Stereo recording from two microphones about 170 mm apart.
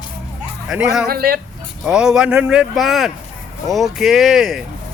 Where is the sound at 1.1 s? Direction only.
60° right (ahead or behind).